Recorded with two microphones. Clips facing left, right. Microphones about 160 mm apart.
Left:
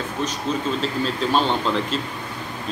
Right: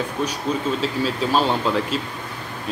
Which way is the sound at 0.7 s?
5° right (ahead or behind).